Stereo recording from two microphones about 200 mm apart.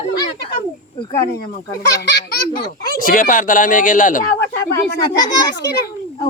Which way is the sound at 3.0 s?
45° left (ahead or behind).